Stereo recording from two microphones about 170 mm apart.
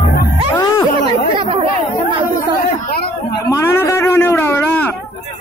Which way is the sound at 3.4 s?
15° left (ahead or behind).